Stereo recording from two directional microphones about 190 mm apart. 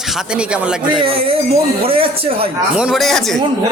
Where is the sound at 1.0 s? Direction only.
30° right (ahead or behind).